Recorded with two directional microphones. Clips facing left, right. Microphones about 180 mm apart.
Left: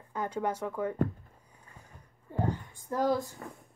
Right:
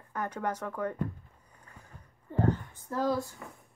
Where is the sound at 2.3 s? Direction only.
10° left (ahead or behind).